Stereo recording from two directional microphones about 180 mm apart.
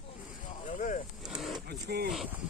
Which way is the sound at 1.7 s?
60° right (ahead or behind).